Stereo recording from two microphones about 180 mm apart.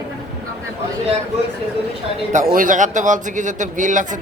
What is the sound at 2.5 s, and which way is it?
Speech, 45° right (ahead or behind).